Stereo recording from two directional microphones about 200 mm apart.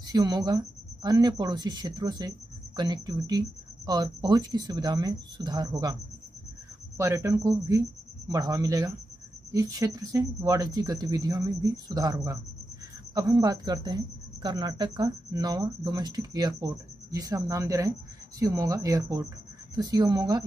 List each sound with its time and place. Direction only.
0.0 s speech: 20° right (ahead or behind)
7.0 s speech: 15° right (ahead or behind)